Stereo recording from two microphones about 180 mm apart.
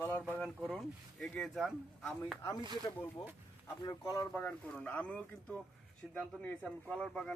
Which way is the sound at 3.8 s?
20° left (ahead or behind).